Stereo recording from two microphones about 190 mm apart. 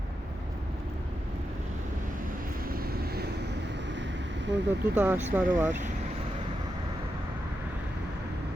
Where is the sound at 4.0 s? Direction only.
70° right (ahead or behind).